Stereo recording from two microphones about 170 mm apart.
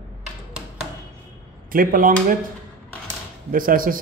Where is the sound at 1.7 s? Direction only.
55° right (ahead or behind).